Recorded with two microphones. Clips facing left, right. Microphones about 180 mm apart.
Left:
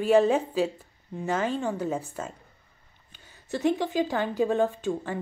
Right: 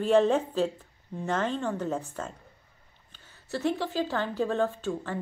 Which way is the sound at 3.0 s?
15° left (ahead or behind).